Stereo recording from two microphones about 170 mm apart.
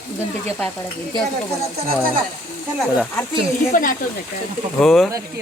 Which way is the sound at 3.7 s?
50° left (ahead or behind).